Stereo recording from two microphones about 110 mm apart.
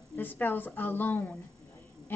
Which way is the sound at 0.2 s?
15° left (ahead or behind).